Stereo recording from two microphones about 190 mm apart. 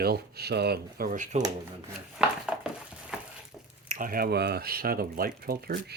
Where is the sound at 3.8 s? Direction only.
45° right (ahead or behind).